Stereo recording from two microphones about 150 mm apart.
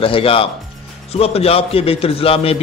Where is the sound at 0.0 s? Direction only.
35° left (ahead or behind).